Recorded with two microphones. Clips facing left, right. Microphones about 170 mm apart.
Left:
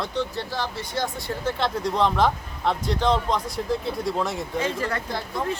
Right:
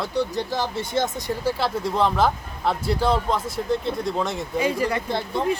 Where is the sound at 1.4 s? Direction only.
5° right (ahead or behind).